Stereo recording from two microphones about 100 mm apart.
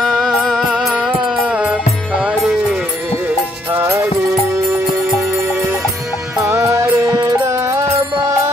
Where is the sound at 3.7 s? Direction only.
25° right (ahead or behind).